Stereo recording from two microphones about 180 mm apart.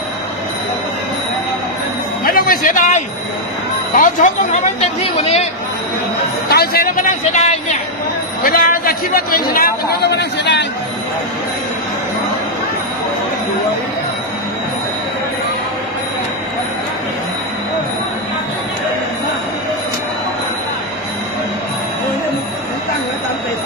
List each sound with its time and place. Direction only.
2.2 s a sound: 55° left (ahead or behind)
3.9 s speech: 45° left (ahead or behind)
6.5 s speech: 60° left (ahead or behind); by 7.8 s 40° left (ahead or behind)
8.4 s a man's voice: 50° left (ahead or behind); by 10.7 s 70° left (ahead or behind)